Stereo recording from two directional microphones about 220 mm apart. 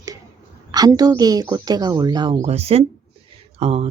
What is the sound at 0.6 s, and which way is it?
Speech, 15° right (ahead or behind).